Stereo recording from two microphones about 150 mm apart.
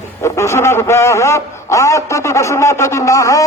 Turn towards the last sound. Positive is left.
turn(degrees=20)  # may be behind; listen again after turning